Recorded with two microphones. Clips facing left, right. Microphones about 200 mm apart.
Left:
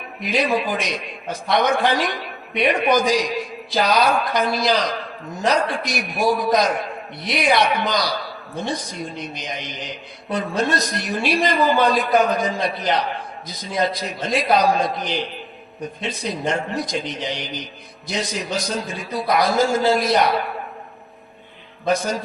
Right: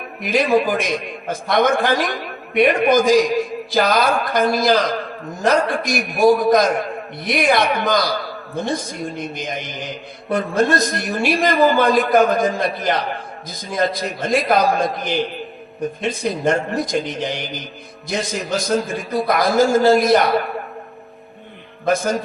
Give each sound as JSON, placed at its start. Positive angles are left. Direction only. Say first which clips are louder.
{"t": 0.2, "sound": "a man's voice", "louder": "right 4 dB", "side_deg": -50}
{"t": 21.8, "sound": "a man's voice", "louder": "right 3 dB", "side_deg": -50}